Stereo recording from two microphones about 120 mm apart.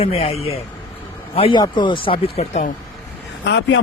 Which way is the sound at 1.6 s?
40° left (ahead or behind).